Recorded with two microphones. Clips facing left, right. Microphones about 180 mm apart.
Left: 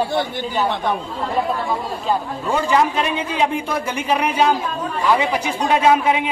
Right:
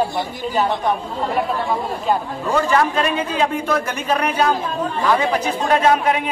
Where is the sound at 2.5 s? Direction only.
15° left (ahead or behind).